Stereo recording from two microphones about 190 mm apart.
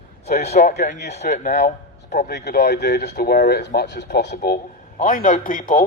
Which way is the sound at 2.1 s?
60° left (ahead or behind).